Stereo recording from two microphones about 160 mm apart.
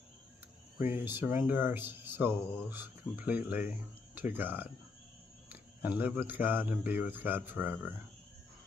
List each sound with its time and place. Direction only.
0.7 s speech: 15° right (ahead or behind)